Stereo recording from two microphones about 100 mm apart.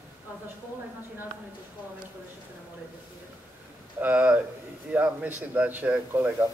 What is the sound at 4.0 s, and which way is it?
A man's voice, 15° right (ahead or behind).